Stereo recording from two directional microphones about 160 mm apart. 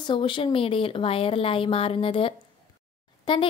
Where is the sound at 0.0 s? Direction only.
30° left (ahead or behind).